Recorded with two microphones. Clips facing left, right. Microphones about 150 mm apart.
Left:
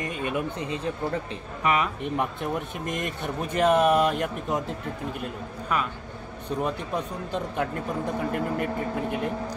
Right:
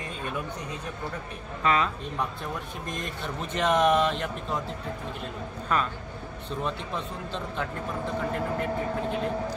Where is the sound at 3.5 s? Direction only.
5° left (ahead or behind).